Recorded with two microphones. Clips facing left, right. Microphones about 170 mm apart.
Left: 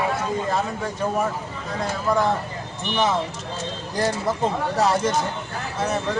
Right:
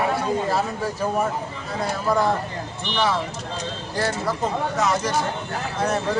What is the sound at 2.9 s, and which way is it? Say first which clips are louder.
Speech: left 1 dB; 20° left (ahead or behind).